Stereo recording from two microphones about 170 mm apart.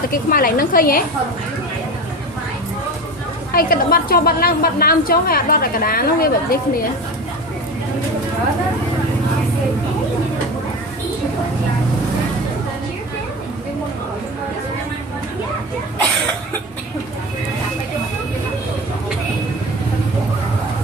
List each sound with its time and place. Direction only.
0.1 s a woman's voice: 60° left (ahead or behind)
3.5 s a woman's voice: 60° left (ahead or behind)